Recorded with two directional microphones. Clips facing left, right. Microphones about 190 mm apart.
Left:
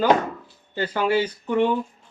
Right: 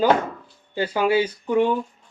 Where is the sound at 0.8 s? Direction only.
10° right (ahead or behind).